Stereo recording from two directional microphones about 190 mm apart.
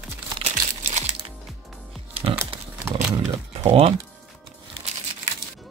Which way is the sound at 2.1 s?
30° right (ahead or behind).